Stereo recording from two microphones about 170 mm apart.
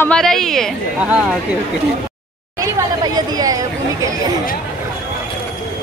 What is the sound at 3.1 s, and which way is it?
Speech, 20° right (ahead or behind).